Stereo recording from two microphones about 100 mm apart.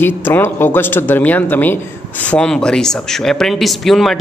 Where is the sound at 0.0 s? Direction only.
25° left (ahead or behind).